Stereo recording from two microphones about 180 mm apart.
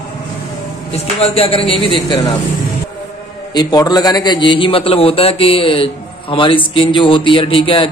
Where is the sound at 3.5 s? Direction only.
25° left (ahead or behind).